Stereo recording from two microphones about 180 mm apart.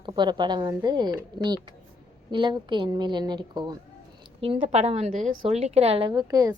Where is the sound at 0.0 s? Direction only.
25° right (ahead or behind).